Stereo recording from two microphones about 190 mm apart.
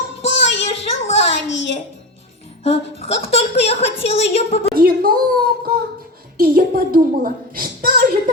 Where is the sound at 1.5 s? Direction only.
70° left (ahead or behind).